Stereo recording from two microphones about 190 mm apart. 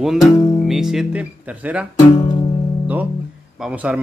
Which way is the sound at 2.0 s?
25° left (ahead or behind).